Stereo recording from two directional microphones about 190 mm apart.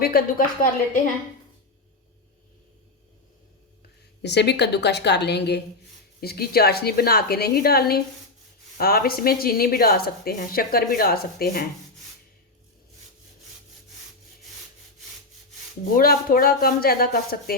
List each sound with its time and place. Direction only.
0.0 s a woman's voice: 50° left (ahead or behind)
4.2 s a woman's voice: 65° left (ahead or behind)
16.0 s a woman's voice: 50° left (ahead or behind)